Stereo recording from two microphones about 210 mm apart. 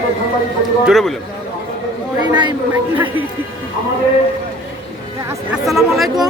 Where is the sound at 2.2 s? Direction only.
20° right (ahead or behind).